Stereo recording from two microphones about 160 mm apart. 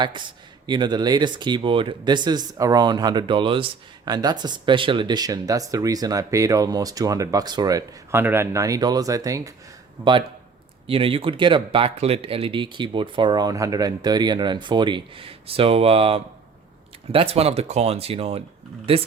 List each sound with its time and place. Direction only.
0.7 s speech: 30° right (ahead or behind)